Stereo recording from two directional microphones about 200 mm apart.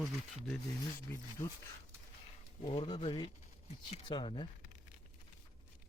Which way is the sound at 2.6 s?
25° left (ahead or behind).